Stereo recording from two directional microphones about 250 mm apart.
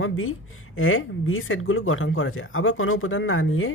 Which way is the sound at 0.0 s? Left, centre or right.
Left.